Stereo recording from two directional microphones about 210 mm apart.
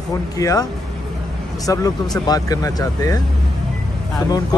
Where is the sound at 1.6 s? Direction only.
15° left (ahead or behind).